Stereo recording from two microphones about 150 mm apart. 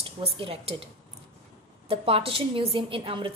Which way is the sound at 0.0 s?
40° right (ahead or behind).